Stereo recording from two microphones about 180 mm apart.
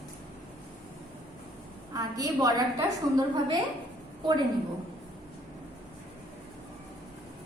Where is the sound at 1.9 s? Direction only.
20° right (ahead or behind).